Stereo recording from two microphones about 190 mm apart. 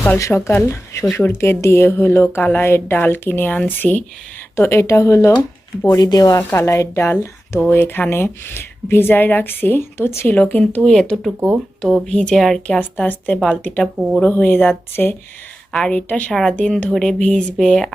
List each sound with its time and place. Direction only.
0.0 s speech: 15° left (ahead or behind)
11.3 s speech: 10° right (ahead or behind)
11.8 s speech: 5° left (ahead or behind)